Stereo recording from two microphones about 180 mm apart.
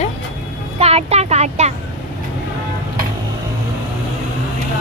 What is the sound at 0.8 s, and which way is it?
Speech, 35° right (ahead or behind).